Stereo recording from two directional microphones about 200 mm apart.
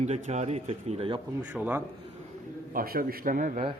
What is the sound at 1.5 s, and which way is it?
Speech, 10° right (ahead or behind).